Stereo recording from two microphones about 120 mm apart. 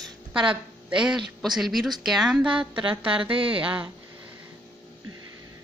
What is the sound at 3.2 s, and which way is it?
Speech, 50° right (ahead or behind).